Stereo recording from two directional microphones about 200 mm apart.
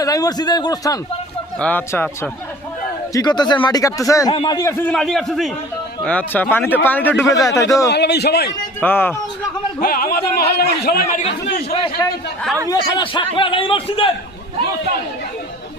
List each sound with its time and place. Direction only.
0.0 s speech: 20° left (ahead or behind)
1.5 s a man's voice: 10° left (ahead or behind)
4.8 s a man's voice: 5° left (ahead or behind)
7.9 s speech: 55° left (ahead or behind)
8.8 s a man's voice: 10° left (ahead or behind)
9.8 s speech: 45° left (ahead or behind)
11.2 s speech: 30° left (ahead or behind)
12.6 s speech: 20° left (ahead or behind)